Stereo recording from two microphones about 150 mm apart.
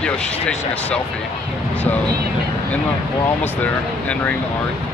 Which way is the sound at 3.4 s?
10° left (ahead or behind).